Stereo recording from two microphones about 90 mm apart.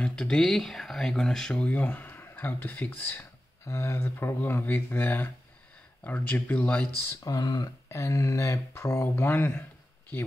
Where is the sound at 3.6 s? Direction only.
35° left (ahead or behind); by 6.9 s 15° left (ahead or behind).